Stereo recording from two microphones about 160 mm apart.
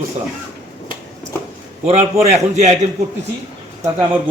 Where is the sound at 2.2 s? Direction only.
45° right (ahead or behind).